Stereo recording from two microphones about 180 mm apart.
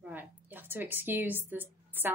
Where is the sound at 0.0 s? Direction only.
10° right (ahead or behind).